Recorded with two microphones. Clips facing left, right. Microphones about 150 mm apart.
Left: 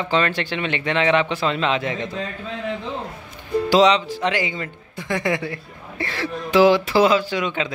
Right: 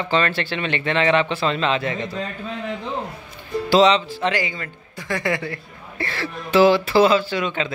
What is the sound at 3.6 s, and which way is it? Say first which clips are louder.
Speech: right 1 dB; 10° left (ahead or behind).